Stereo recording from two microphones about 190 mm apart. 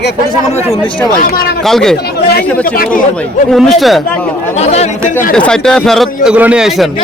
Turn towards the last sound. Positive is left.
turn(degrees=-5)  # may be behind; listen again after turning